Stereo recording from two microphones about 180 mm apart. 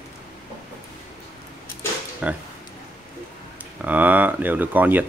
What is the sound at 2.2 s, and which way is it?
Speech, 10° right (ahead or behind).